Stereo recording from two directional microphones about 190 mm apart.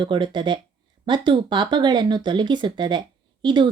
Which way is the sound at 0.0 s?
25° right (ahead or behind).